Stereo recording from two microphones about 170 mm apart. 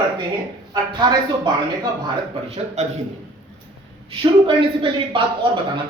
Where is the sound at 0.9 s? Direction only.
25° right (ahead or behind).